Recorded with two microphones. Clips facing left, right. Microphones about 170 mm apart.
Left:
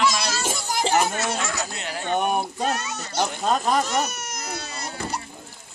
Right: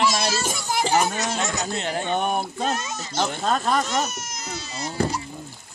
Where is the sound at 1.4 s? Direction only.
20° right (ahead or behind).